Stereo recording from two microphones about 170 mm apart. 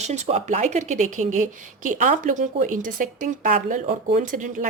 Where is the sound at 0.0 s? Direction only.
40° right (ahead or behind).